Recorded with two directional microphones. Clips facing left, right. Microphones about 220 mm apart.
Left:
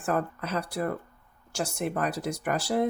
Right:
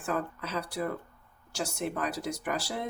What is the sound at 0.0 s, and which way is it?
Speech, 55° left (ahead or behind).